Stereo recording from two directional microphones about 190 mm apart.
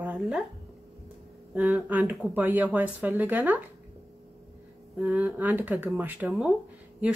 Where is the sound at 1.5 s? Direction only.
5° right (ahead or behind).